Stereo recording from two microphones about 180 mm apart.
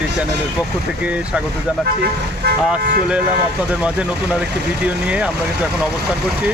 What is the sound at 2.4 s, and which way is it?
Speech, 65° right (ahead or behind).